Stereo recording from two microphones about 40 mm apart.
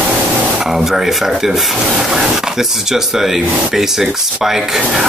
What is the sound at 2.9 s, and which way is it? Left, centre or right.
Speech, centre.